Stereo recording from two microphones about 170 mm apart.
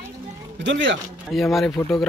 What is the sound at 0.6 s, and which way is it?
Speech, 90° right.